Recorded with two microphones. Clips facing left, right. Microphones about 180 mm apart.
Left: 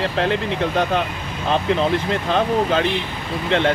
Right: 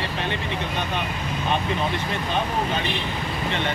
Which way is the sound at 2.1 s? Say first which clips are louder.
Left 6 dB; 90° left.